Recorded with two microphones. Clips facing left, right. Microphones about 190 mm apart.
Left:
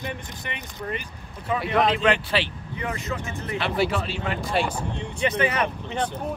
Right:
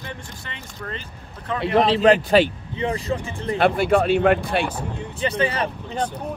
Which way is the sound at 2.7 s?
30° right (ahead or behind).